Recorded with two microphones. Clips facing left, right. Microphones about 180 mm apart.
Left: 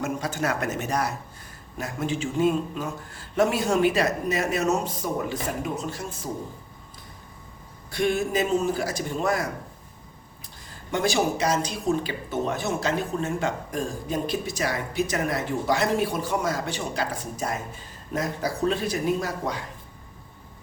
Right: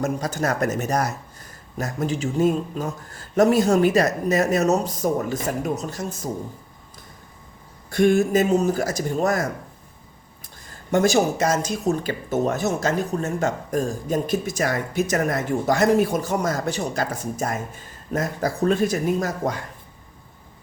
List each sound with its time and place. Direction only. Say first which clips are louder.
0.0 s a man's voice: right 3 dB; 40° right (ahead or behind)
7.9 s speech: right 7 dB; 50° right (ahead or behind)
10.9 s speech: right 5 dB; 45° right (ahead or behind)